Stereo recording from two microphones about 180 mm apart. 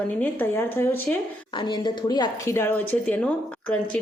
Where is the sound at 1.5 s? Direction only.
25° left (ahead or behind).